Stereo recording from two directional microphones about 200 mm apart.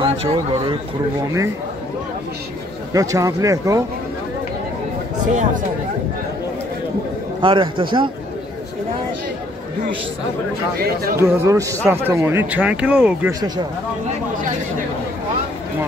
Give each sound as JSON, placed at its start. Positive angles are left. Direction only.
{"t": 0.0, "sound": "speech", "side_deg": -25}
{"t": 2.9, "sound": "a man's voice", "side_deg": -15}
{"t": 5.3, "sound": "speech", "side_deg": -40}
{"t": 7.4, "sound": "speech", "side_deg": -25}
{"t": 11.1, "sound": "a man's voice", "side_deg": -15}
{"t": 13.3, "sound": "speech", "side_deg": -20}